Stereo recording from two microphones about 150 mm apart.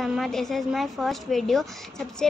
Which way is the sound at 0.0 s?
Centre (ahead or behind).